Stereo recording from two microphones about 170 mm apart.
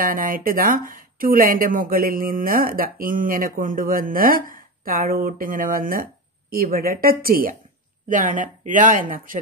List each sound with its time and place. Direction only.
0.0 s speech: 55° right (ahead or behind)